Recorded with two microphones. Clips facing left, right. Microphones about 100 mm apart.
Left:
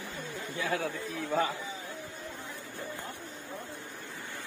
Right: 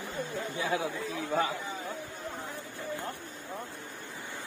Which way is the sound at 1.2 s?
Centre (ahead or behind).